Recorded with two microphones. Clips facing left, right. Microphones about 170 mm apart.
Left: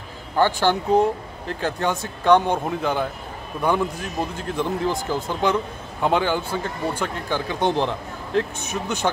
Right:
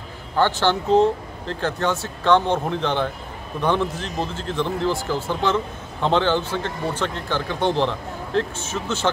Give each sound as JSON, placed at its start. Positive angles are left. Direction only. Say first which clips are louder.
{"t": 0.4, "sound": "speech", "louder": "even", "side_deg": 10}